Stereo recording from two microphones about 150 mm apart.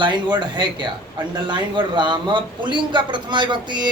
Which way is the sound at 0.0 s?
30° right (ahead or behind).